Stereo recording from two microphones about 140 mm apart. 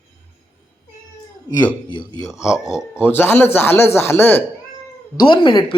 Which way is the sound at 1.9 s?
35° left (ahead or behind).